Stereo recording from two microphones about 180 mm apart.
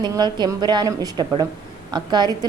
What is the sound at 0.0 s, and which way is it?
A woman's voice, 25° right (ahead or behind).